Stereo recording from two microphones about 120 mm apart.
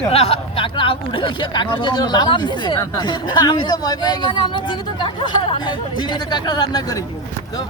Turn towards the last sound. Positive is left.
turn(degrees=35)  # may be behind; listen again after turning